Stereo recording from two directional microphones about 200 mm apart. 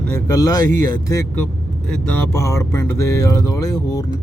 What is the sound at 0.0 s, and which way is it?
Speech, 15° left (ahead or behind).